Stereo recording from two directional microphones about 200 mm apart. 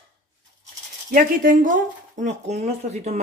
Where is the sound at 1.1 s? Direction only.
40° right (ahead or behind).